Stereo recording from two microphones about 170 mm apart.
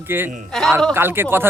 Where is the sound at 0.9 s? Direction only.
15° right (ahead or behind).